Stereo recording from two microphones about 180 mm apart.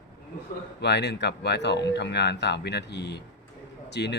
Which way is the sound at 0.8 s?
70° left (ahead or behind).